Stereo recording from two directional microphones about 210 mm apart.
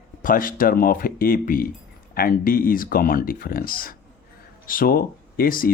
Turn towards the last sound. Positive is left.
turn(degrees=40)  # may be behind; listen again after turning